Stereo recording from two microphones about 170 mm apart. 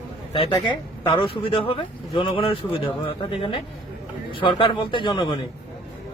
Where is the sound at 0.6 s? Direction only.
30° left (ahead or behind).